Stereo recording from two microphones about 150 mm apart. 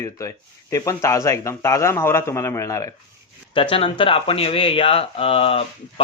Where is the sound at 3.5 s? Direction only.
35° left (ahead or behind).